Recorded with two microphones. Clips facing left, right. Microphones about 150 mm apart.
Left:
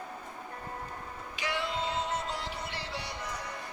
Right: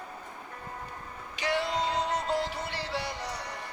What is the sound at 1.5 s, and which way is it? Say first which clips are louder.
Music: right 5 dB; 35° right (ahead or behind).